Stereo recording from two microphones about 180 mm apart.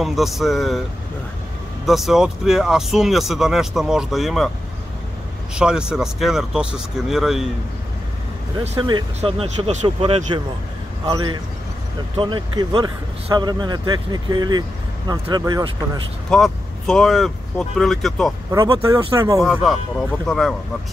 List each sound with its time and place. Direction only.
0.0 s speech: centre (ahead or behind)
1.9 s speech: centre (ahead or behind)
5.5 s speech: 5° right (ahead or behind)
8.5 s a man's voice: 25° right (ahead or behind)
16.3 s speech: centre (ahead or behind)
18.5 s a man's voice: 20° right (ahead or behind)
19.4 s speech: centre (ahead or behind)